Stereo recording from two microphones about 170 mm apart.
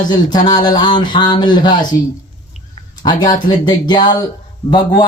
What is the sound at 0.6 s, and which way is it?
A man's voice, 25° left (ahead or behind).